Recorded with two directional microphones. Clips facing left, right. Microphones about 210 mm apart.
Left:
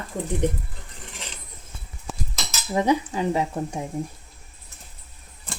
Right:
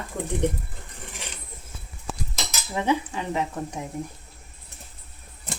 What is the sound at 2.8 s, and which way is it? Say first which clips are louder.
Speech: left 3 dB; 35° left (ahead or behind).